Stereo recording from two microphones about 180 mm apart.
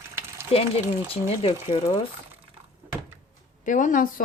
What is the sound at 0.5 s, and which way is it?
Speech, 35° left (ahead or behind).